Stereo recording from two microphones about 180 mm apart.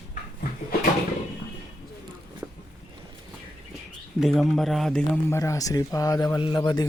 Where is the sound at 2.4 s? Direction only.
10° right (ahead or behind).